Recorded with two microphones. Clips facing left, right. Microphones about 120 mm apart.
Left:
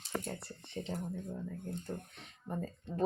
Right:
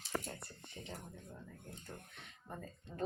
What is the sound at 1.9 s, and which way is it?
Speech, 25° left (ahead or behind).